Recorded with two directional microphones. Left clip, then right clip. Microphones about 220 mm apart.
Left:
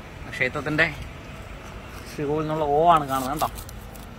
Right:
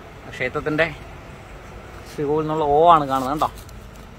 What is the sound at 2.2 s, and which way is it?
Speech, 20° right (ahead or behind).